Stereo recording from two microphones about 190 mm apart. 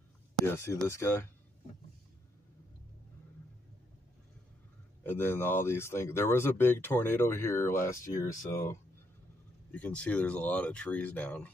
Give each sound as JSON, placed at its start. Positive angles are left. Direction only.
{"t": 0.4, "sound": "speech", "side_deg": 15}
{"t": 5.0, "sound": "speech", "side_deg": 10}